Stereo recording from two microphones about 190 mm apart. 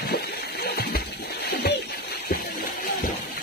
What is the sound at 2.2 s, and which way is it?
Music, 45° left (ahead or behind).